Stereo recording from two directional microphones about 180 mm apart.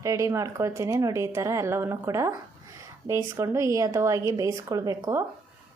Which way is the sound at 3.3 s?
15° right (ahead or behind).